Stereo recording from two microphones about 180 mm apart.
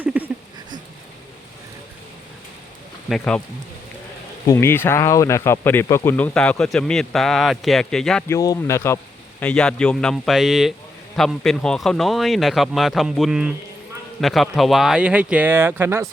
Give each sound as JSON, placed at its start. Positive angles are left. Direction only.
{"t": 0.0, "sound": "a sound", "side_deg": -10}
{"t": 3.1, "sound": "speech", "side_deg": 5}
{"t": 4.4, "sound": "speech", "side_deg": 15}
{"t": 8.3, "sound": "speech", "side_deg": 15}